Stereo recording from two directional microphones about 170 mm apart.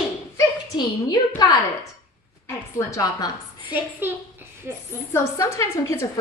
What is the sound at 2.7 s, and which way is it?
Speech, 20° left (ahead or behind).